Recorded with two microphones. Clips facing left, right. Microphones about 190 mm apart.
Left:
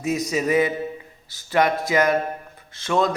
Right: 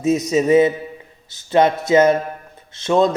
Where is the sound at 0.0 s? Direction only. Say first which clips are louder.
Right 6 dB; 25° right (ahead or behind).